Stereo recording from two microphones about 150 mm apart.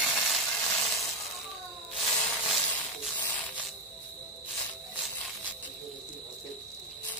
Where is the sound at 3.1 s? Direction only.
30° left (ahead or behind).